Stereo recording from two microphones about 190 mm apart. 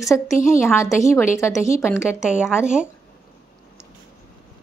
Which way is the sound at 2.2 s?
5° right (ahead or behind).